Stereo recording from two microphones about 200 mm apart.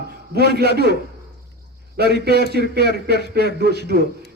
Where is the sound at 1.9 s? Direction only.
55° right (ahead or behind).